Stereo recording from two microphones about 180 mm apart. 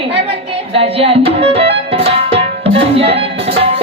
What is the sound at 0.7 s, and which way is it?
Music, 30° right (ahead or behind).